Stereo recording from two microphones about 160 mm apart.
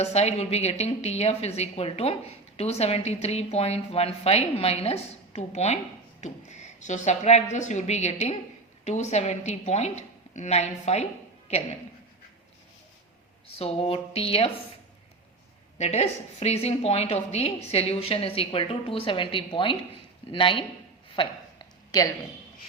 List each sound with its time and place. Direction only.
0.0 s a woman's voice: 40° left (ahead or behind)
13.5 s a woman's voice: 35° left (ahead or behind)
15.8 s a woman's voice: 45° left (ahead or behind)
21.2 s a sound: 25° left (ahead or behind)